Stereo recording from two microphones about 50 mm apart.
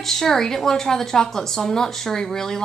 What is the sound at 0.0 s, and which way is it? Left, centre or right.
A woman's voice, centre.